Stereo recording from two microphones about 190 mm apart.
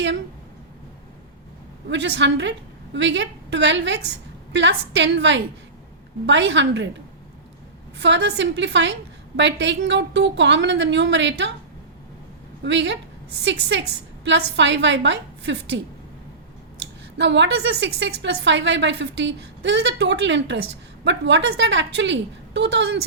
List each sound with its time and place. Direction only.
1.9 s a woman's voice: 70° right (ahead or behind)
7.9 s a woman's voice: 65° right (ahead or behind)
12.6 s a woman's voice: 70° right (ahead or behind)
17.2 s a woman's voice: 70° right (ahead or behind)